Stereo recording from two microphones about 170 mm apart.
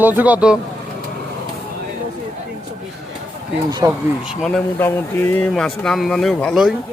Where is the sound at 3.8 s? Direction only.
20° right (ahead or behind).